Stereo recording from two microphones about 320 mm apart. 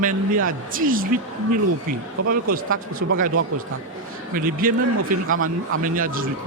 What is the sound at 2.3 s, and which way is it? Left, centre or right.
A man's voice, right.